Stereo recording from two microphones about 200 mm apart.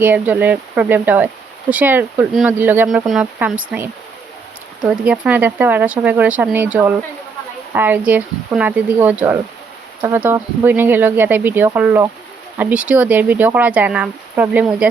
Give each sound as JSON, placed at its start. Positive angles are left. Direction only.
{"t": 0.0, "sound": "speech", "side_deg": -10}